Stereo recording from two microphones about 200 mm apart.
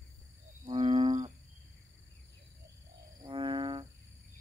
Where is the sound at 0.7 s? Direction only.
25° right (ahead or behind).